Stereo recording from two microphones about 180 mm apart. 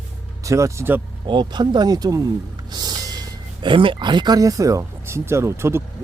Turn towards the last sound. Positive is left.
turn(degrees=-15)  # may be behind; listen again after turning